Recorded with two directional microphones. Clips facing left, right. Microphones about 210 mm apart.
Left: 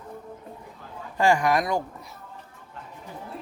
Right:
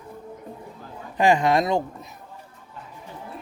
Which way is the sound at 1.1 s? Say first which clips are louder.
Right 2 dB; 20° right (ahead or behind).